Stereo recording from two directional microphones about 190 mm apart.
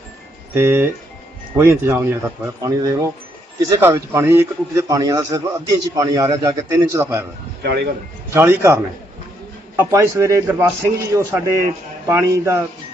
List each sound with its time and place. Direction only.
0.5 s a man's voice: 15° right (ahead or behind)
7.6 s speech: 60° right (ahead or behind)
8.3 s a man's voice: 15° right (ahead or behind)